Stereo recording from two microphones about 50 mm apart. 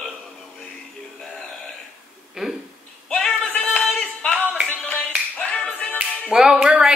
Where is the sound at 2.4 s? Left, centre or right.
Centre.